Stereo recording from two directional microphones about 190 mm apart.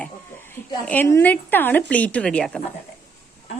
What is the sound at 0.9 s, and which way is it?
A woman's voice, 10° left (ahead or behind).